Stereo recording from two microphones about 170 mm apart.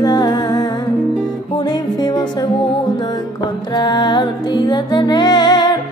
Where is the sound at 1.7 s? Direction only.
25° left (ahead or behind).